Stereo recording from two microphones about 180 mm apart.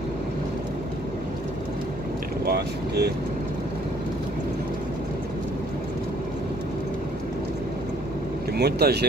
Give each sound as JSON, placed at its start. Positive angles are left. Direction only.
{"t": 2.4, "sound": "boat", "side_deg": -60}
{"t": 8.5, "sound": "speech", "side_deg": -65}